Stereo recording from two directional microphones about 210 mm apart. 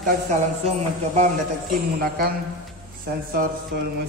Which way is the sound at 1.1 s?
35° right (ahead or behind).